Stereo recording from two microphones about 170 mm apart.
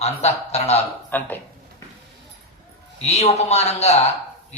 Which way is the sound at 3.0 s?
40° left (ahead or behind).